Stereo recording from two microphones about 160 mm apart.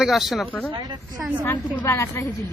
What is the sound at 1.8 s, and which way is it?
Speech, 15° left (ahead or behind).